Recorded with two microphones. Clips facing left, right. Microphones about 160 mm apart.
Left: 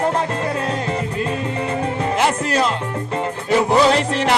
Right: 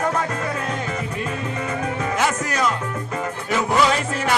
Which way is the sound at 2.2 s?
25° left (ahead or behind).